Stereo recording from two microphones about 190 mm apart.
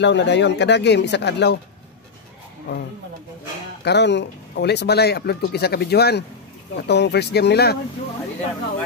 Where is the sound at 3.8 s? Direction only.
65° left (ahead or behind).